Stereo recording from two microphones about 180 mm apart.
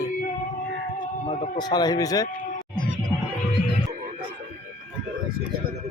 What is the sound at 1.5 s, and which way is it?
Speech, 20° left (ahead or behind).